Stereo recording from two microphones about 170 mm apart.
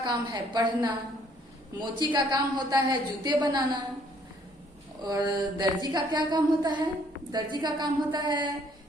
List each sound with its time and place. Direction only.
0.0 s a woman's voice: 25° right (ahead or behind)
5.0 s a woman's voice: 25° right (ahead or behind)